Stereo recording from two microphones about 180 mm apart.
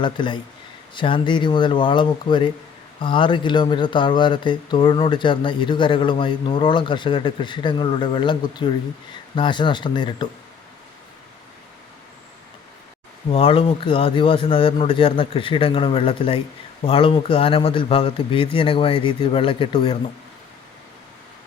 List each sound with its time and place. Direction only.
0.0 s speech: 25° left (ahead or behind)
13.3 s speech: 30° left (ahead or behind)